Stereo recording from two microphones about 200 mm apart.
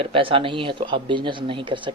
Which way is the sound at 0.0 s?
25° right (ahead or behind).